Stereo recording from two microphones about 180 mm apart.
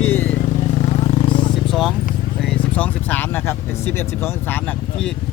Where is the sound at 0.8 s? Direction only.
35° left (ahead or behind).